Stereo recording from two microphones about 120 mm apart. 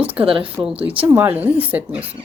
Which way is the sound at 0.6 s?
10° right (ahead or behind).